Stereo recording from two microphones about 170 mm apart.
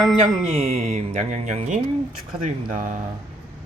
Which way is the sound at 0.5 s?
40° right (ahead or behind).